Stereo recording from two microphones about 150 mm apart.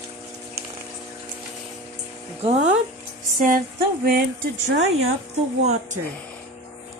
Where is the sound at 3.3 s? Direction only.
65° right (ahead or behind).